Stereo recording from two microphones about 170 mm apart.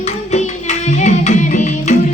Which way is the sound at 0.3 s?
45° left (ahead or behind).